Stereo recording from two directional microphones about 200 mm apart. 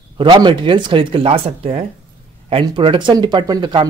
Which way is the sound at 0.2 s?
20° right (ahead or behind).